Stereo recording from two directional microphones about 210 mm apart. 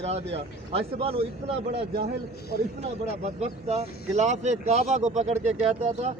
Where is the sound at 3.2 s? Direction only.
30° right (ahead or behind).